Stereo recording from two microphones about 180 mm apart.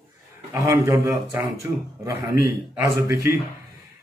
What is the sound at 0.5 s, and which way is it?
A man's voice, 15° right (ahead or behind).